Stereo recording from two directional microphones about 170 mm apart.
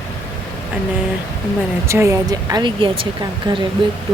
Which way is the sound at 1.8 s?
15° right (ahead or behind).